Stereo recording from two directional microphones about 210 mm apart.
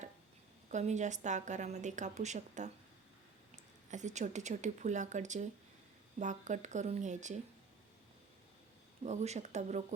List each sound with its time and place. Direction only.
0.7 s a woman's voice: 35° right (ahead or behind)
9.0 s a woman's voice: 30° right (ahead or behind)